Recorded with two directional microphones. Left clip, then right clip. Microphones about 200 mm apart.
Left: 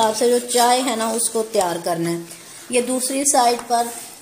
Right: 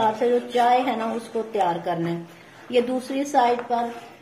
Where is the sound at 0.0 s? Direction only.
45° left (ahead or behind).